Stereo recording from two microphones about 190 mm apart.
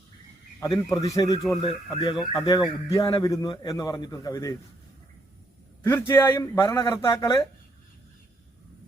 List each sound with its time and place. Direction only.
0.6 s a man's voice: 20° left (ahead or behind)
5.8 s speech: 10° left (ahead or behind)